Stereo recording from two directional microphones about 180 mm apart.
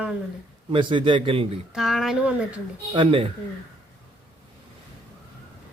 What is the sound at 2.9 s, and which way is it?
Speech, 30° right (ahead or behind).